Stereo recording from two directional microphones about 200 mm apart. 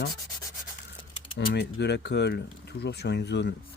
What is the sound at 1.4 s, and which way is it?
Speech, 55° left (ahead or behind).